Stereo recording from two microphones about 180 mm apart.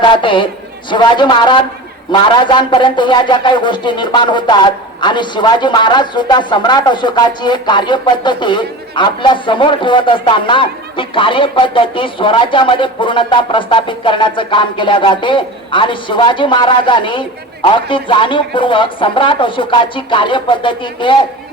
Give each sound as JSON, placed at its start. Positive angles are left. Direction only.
{"t": 0.2, "sound": "speech", "side_deg": 25}